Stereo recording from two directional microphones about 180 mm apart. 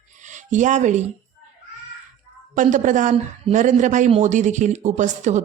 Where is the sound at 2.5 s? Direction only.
45° right (ahead or behind).